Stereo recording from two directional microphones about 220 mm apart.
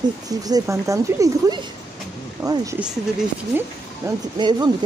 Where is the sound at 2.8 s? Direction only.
5° right (ahead or behind).